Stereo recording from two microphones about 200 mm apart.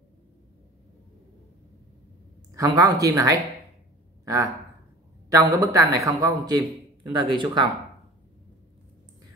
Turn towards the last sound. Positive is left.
turn(degrees=-25)  # may be behind; listen again after turning